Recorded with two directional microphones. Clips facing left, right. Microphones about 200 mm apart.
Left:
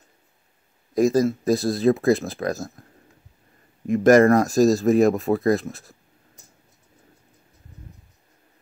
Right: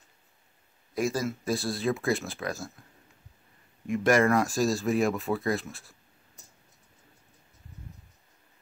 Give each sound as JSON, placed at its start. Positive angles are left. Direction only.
{"t": 0.9, "sound": "speech", "side_deg": 40}
{"t": 3.8, "sound": "speech", "side_deg": 40}